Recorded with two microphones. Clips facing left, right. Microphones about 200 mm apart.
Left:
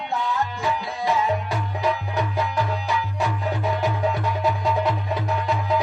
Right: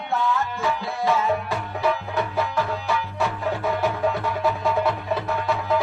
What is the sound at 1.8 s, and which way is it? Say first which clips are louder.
Music: right 1 dB; 15° left (ahead or behind).